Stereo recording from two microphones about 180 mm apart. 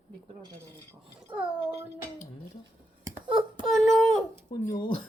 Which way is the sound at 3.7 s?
5° left (ahead or behind).